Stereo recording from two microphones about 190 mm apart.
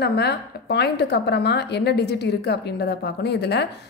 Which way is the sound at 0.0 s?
60° left (ahead or behind).